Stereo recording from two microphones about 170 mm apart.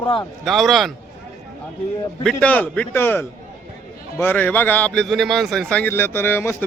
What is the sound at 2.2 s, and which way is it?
A man's voice, 10° left (ahead or behind).